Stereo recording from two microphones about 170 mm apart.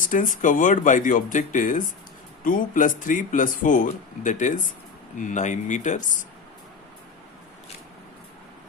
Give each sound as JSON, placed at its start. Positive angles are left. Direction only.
{"t": 0.0, "sound": "speech", "side_deg": 50}